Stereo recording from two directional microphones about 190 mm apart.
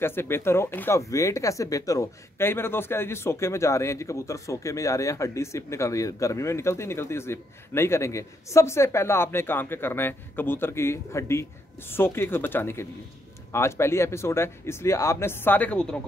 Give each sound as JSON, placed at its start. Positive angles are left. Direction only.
{"t": 0.0, "sound": "speech", "side_deg": 10}